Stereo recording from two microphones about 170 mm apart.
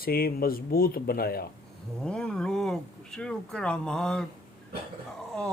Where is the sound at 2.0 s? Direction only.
5° left (ahead or behind).